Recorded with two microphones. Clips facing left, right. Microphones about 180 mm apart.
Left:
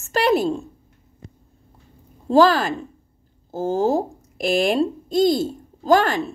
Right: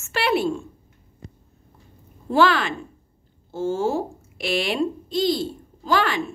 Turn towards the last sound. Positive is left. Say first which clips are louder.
# left 5 dB
turn(degrees=40)  # may be behind; listen again after turning